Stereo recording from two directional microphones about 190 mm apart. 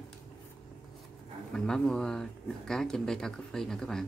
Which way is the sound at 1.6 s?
5° left (ahead or behind).